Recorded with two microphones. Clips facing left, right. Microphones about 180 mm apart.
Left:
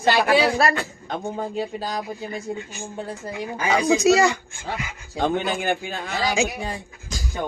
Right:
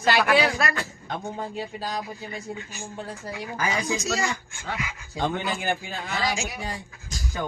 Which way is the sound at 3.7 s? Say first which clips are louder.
Left 14 dB; 70° left (ahead or behind).